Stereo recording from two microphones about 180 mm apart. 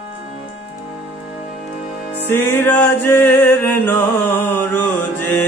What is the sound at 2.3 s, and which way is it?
Music, 10° left (ahead or behind).